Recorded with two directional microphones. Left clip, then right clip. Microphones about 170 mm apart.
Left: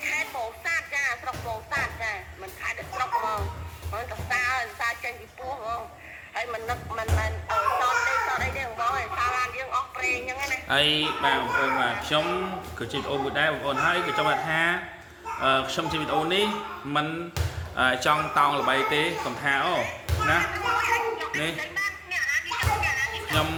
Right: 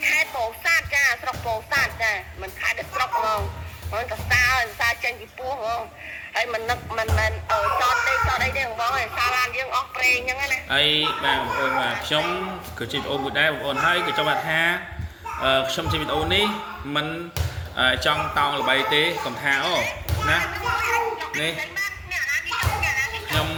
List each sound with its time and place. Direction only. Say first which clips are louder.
0.0 s music: right 7 dB; 10° right (ahead or behind)
3.9 s a sound: right 7 dB; 15° right (ahead or behind)
6.3 s music: right 6 dB; 15° right (ahead or behind)
10.7 s speech: right 2 dB; 20° left (ahead or behind)
17.7 s speech: right 2 dB; 15° left (ahead or behind)
20.4 s a sound: right 1 dB; 10° left (ahead or behind)